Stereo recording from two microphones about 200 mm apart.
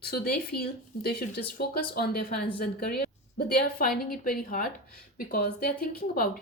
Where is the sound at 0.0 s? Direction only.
50° left (ahead or behind).